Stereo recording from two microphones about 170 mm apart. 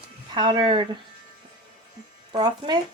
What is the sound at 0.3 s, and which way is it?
Speech, 25° right (ahead or behind).